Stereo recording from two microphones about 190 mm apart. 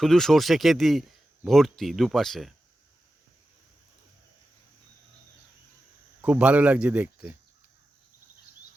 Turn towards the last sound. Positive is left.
turn(degrees=-10)  # may be behind; listen again after turning